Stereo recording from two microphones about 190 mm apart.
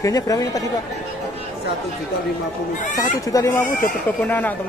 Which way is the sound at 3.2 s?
20° left (ahead or behind).